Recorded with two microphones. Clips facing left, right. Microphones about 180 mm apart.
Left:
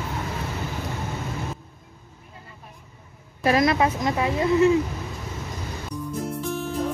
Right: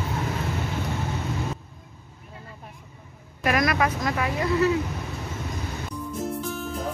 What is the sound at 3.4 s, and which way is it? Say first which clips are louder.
A woman's voice: left 3 dB; 25° left (ahead or behind).